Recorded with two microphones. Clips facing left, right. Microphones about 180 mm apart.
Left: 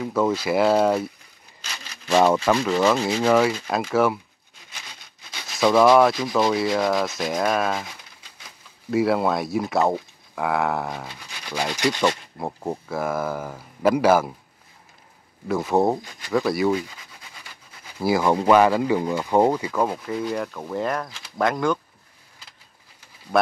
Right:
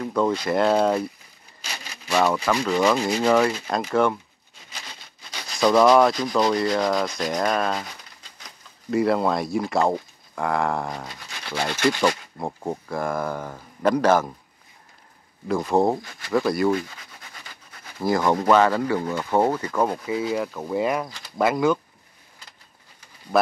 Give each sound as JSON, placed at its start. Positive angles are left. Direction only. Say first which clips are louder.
{"t": 0.0, "sound": "speech", "louder": "even", "side_deg": 5}
{"t": 2.1, "sound": "speech", "louder": "left 3 dB", "side_deg": 20}
{"t": 2.5, "sound": "speech", "louder": "left 1 dB", "side_deg": 5}
{"t": 5.6, "sound": "speech", "louder": "even", "side_deg": 0}
{"t": 8.9, "sound": "speech", "louder": "even", "side_deg": 0}
{"t": 12.4, "sound": "speech", "louder": "even", "side_deg": 0}
{"t": 15.4, "sound": "speech", "louder": "even", "side_deg": 5}
{"t": 17.9, "sound": "speech", "louder": "left 1 dB", "side_deg": 10}
{"t": 19.7, "sound": "speech", "louder": "right 1 dB", "side_deg": 0}
{"t": 23.3, "sound": "speech", "louder": "even", "side_deg": 0}